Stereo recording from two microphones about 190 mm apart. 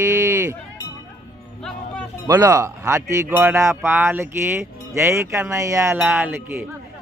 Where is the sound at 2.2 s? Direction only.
15° right (ahead or behind).